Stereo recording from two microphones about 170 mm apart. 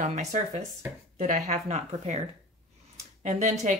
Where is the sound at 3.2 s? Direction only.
45° right (ahead or behind).